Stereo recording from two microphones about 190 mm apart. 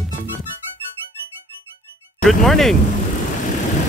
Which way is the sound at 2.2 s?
Centre (ahead or behind).